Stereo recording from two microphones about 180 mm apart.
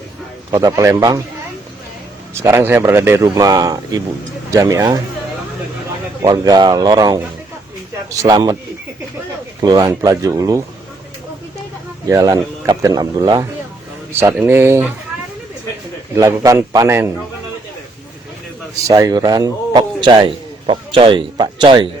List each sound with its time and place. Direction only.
0.5 s speech: 20° right (ahead or behind)
2.4 s speech: 15° right (ahead or behind)
6.2 s speech: 20° right (ahead or behind)
9.6 s speech: 20° right (ahead or behind)
12.0 s speech: 15° right (ahead or behind)
14.1 s speech: 10° right (ahead or behind)
16.1 s speech: 20° right (ahead or behind)
18.9 s a man's voice: 20° right (ahead or behind)